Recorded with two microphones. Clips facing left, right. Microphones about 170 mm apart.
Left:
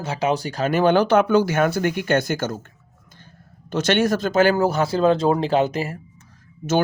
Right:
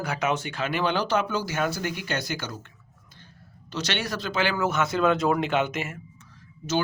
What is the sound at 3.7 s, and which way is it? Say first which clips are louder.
Speech: left 11 dB; 50° left (ahead or behind).